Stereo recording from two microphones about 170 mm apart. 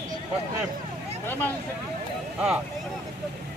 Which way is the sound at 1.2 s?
10° left (ahead or behind).